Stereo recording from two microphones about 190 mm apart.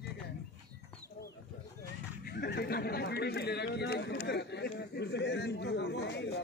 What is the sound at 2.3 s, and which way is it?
Chatter, 60° left (ahead or behind).